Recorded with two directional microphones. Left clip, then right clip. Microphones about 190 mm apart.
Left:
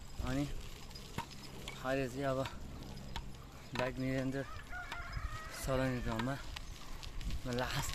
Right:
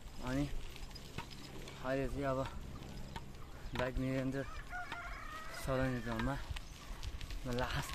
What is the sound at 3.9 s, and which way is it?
Speech, 10° left (ahead or behind).